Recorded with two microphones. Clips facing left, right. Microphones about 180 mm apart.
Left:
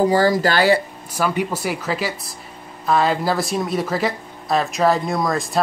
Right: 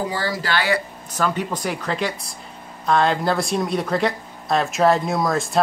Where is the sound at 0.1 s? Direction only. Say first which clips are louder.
Left 8 dB; 45° left (ahead or behind).